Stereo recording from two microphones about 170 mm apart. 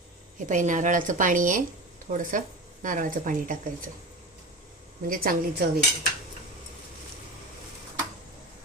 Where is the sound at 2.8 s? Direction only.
50° right (ahead or behind).